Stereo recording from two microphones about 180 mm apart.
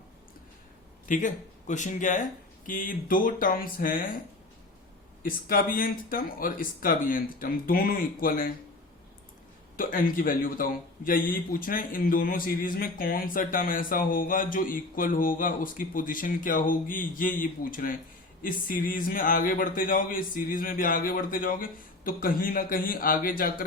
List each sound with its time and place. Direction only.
1.0 s a man's voice: 45° left (ahead or behind)
5.2 s a man's voice: 50° left (ahead or behind)
9.7 s a man's voice: 50° left (ahead or behind)